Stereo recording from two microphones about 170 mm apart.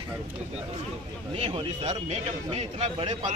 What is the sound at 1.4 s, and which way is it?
A man's voice, 35° right (ahead or behind).